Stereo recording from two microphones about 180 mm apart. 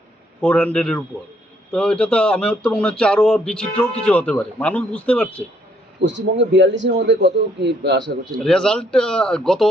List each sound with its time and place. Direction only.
0.4 s speech: 5° left (ahead or behind)
6.0 s a man's voice: 80° right
8.4 s speech: 5° left (ahead or behind)